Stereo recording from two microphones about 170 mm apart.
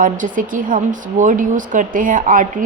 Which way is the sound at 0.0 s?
50° right (ahead or behind).